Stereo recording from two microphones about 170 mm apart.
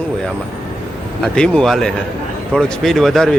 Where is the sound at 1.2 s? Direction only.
5° left (ahead or behind).